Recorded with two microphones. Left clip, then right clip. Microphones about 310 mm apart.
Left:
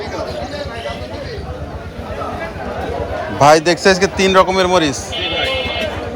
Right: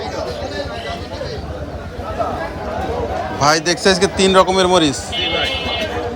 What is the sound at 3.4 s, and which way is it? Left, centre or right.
Speech, centre.